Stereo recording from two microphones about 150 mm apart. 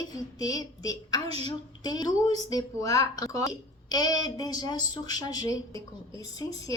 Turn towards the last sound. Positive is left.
turn(degrees=25)  # may be behind; listen again after turning